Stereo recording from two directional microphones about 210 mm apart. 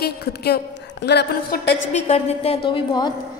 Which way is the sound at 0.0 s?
50° left (ahead or behind).